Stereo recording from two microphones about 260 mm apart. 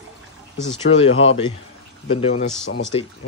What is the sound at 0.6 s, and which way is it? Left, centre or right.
Speech, left.